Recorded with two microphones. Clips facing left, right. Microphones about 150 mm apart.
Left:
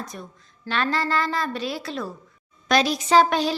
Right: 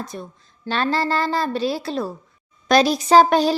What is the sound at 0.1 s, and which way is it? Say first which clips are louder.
Speech: right 5 dB; 30° right (ahead or behind).